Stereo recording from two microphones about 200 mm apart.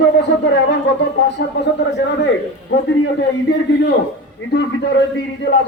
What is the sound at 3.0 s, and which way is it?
A man's voice, 60° left (ahead or behind).